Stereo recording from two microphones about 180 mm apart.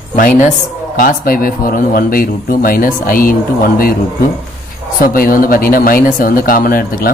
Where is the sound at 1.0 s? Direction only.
50° left (ahead or behind).